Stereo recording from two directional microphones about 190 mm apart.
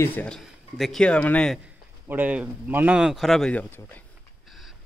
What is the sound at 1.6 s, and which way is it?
Speech, 10° right (ahead or behind).